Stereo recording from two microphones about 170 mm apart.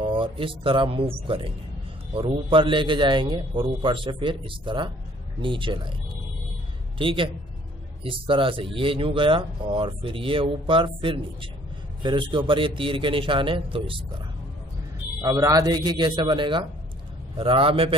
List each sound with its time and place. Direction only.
0.0 s a man's voice: 30° right (ahead or behind)
7.0 s speech: 30° right (ahead or behind)
15.2 s a man's voice: 20° right (ahead or behind)